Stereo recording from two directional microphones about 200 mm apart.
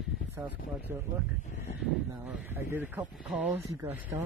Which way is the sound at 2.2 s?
10° right (ahead or behind).